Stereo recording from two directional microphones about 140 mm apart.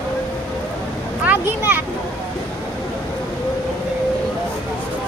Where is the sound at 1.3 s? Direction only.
15° right (ahead or behind).